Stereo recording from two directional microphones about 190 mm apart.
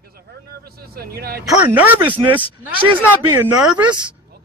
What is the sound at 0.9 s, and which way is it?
Speech, 55° right (ahead or behind).